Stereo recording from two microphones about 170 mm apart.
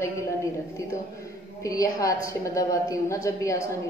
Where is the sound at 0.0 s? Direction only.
15° left (ahead or behind).